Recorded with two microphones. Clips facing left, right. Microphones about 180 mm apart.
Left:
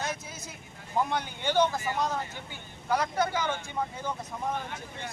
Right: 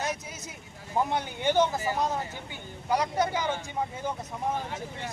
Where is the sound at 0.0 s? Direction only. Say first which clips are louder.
Right 2 dB; 20° right (ahead or behind).